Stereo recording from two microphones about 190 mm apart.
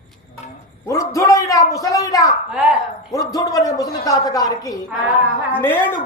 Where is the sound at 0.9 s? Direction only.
15° left (ahead or behind).